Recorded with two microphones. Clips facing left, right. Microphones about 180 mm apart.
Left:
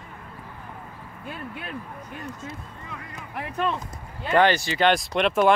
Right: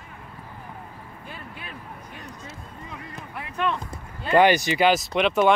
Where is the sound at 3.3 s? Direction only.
35° left (ahead or behind).